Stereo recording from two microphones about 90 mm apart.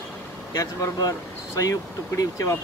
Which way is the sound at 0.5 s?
40° left (ahead or behind).